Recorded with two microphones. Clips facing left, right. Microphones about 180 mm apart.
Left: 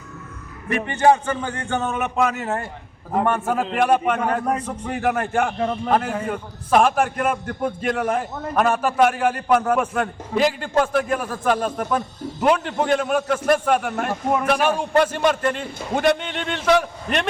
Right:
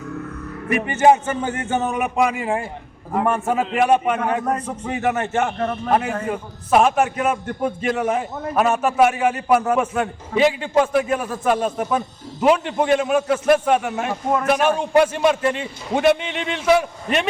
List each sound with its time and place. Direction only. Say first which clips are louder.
0.7 s a man's voice: right 2 dB; 15° right (ahead or behind)
5.5 s a man's voice: even; 15° left (ahead or behind)
5.9 s a man's voice: right 3 dB; 10° right (ahead or behind)